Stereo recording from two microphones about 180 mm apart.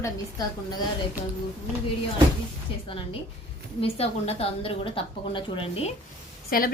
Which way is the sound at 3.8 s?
35° left (ahead or behind).